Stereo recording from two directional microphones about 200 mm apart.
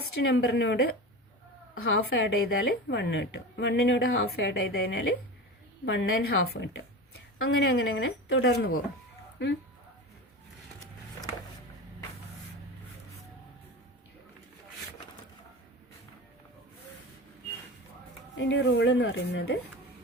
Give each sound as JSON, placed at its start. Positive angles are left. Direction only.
{"t": 0.2, "sound": "a woman's voice", "side_deg": 60}
{"t": 1.7, "sound": "a woman's voice", "side_deg": 85}
{"t": 2.0, "sound": "a woman's voice", "side_deg": 65}
{"t": 7.4, "sound": "a woman's voice", "side_deg": 55}
{"t": 18.3, "sound": "a woman's voice", "side_deg": 60}